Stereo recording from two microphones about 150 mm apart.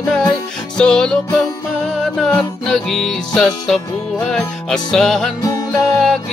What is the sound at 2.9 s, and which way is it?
Music, centre (ahead or behind).